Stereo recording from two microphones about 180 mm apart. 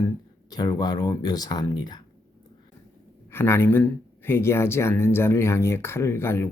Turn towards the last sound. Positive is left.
turn(degrees=15)  # may be behind; listen again after turning